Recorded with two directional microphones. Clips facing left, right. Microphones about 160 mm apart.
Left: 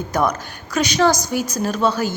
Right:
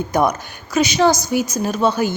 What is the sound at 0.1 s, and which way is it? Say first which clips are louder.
Speech: right 2 dB; 10° right (ahead or behind).